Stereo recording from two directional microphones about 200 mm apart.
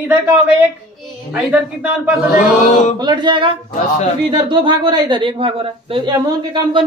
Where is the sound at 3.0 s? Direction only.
20° right (ahead or behind).